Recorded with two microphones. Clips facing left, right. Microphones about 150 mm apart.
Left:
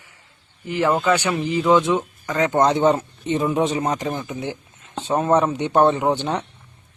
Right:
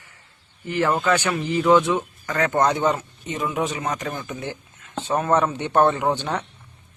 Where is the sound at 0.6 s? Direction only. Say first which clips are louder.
Left 2 dB; 15° left (ahead or behind).